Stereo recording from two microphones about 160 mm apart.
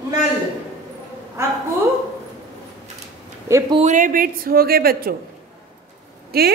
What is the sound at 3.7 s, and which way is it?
A woman's voice, 50° right (ahead or behind).